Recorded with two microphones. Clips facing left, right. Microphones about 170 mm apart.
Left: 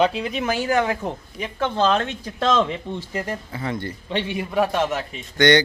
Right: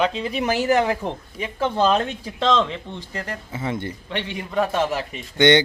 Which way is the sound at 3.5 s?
20° right (ahead or behind).